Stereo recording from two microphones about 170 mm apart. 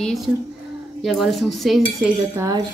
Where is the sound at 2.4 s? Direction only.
20° right (ahead or behind).